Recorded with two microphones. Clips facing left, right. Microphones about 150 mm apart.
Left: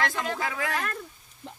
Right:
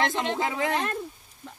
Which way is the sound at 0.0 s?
25° right (ahead or behind).